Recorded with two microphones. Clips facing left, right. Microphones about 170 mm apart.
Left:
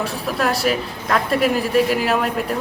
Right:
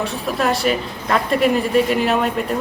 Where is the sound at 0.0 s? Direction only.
Centre (ahead or behind).